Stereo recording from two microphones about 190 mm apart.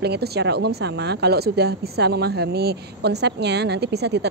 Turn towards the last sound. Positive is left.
turn(degrees=-60)  # may be behind; listen again after turning